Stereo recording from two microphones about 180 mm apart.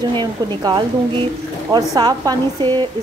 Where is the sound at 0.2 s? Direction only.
25° right (ahead or behind).